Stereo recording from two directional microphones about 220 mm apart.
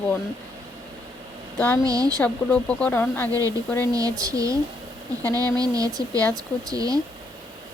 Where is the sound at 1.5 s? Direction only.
5° left (ahead or behind).